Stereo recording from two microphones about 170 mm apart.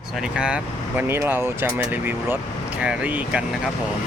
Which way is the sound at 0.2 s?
5° right (ahead or behind).